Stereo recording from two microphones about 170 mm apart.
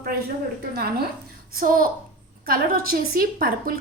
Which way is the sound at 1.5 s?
55° right (ahead or behind).